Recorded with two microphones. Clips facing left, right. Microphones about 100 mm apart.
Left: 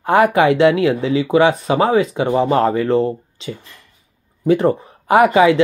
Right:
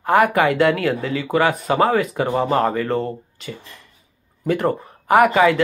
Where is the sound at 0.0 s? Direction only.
25° left (ahead or behind).